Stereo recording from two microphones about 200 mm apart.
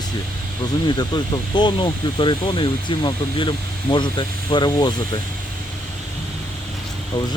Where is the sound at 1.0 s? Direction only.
20° left (ahead or behind).